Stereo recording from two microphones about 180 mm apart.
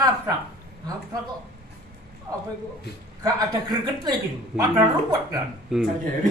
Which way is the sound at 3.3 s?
25° right (ahead or behind).